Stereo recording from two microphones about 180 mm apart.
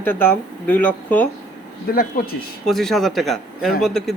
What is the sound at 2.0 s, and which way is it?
Speech, 55° left (ahead or behind).